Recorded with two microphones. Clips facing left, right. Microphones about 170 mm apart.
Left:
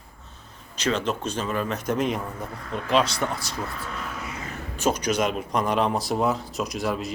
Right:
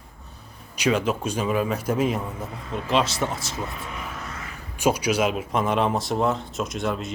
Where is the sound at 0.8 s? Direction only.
10° right (ahead or behind).